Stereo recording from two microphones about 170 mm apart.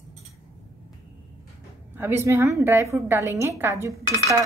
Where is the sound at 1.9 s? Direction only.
15° right (ahead or behind).